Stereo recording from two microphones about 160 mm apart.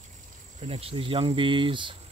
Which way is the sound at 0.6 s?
35° right (ahead or behind).